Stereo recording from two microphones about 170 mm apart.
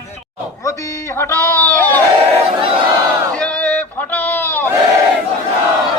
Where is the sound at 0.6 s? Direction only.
20° left (ahead or behind).